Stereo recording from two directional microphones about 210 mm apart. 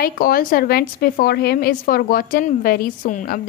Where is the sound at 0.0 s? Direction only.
45° left (ahead or behind).